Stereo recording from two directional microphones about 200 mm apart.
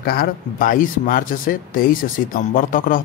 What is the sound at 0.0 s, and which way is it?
Speech, 50° left (ahead or behind).